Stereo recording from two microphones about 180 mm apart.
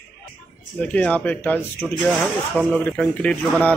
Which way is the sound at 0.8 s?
10° left (ahead or behind).